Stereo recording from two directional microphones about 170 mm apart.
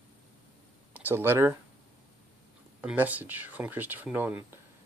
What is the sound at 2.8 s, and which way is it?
Speech, 10° right (ahead or behind).